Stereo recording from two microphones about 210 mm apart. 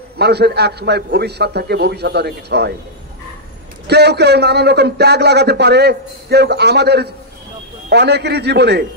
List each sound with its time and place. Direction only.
0.2 s a man's voice: 50° right (ahead or behind)
3.8 s a man's voice: 50° right (ahead or behind)